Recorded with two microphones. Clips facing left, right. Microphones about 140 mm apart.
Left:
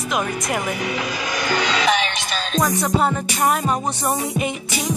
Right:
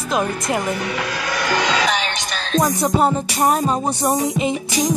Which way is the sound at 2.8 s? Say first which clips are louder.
Right 3 dB; 35° right (ahead or behind).